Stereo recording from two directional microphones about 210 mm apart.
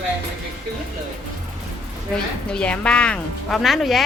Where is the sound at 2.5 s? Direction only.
5° left (ahead or behind).